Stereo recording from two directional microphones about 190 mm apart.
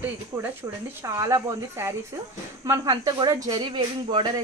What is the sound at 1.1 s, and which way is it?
Speech, 15° right (ahead or behind).